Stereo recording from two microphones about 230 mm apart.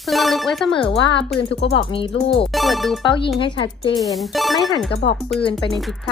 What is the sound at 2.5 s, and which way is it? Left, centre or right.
Speech, centre.